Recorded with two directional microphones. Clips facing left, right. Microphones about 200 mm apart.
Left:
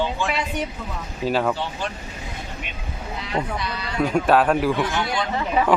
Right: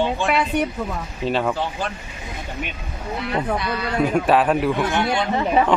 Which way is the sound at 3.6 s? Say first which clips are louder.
Right 5 dB; 55° right (ahead or behind).